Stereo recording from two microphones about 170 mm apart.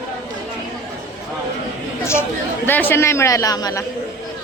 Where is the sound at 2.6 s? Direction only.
10° left (ahead or behind).